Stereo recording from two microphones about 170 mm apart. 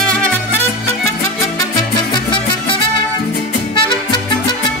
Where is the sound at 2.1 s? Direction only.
25° left (ahead or behind).